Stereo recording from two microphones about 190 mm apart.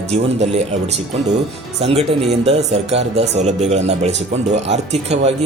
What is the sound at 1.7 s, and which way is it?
A man's voice, 35° right (ahead or behind).